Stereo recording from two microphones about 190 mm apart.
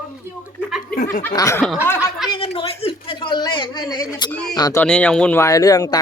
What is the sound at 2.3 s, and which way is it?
A man's voice, 30° left (ahead or behind).